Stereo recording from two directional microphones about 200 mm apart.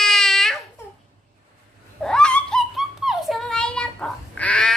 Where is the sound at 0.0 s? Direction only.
Centre (ahead or behind).